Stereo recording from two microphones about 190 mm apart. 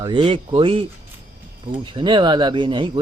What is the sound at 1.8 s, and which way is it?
Speech, 25° right (ahead or behind).